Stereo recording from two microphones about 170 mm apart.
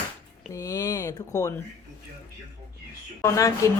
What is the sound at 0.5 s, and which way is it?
Speech, 20° left (ahead or behind).